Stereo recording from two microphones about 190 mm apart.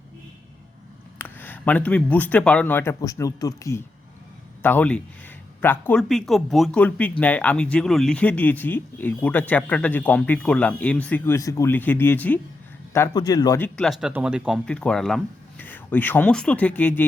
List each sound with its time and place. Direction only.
1.2 s speech: 10° left (ahead or behind)
13.7 s speech: centre (ahead or behind)